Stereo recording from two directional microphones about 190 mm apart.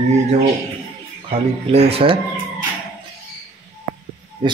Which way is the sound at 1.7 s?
30° right (ahead or behind).